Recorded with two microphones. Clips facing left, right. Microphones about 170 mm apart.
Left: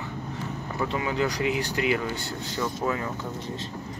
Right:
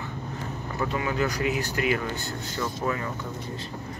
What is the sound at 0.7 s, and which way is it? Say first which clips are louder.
Speech: even; 20° left (ahead or behind).